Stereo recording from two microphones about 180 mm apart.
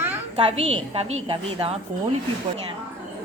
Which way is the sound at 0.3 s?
35° right (ahead or behind).